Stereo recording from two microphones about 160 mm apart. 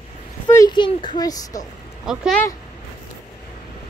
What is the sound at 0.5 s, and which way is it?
Speech, 25° left (ahead or behind).